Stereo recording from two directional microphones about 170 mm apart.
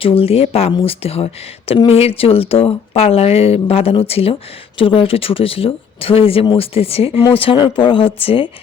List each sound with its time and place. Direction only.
0.0 s speech: 35° left (ahead or behind)